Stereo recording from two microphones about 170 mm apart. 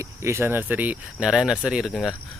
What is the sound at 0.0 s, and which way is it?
Speech, 15° right (ahead or behind).